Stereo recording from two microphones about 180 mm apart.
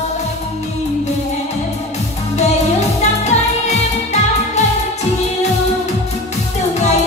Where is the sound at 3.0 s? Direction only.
40° left (ahead or behind).